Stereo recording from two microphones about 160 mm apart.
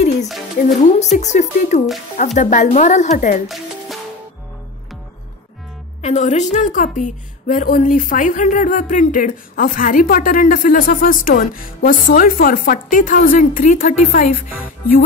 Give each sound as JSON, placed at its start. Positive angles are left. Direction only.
{"t": 0.7, "sound": "speech", "side_deg": 45}
{"t": 6.0, "sound": "a woman's voice", "side_deg": 45}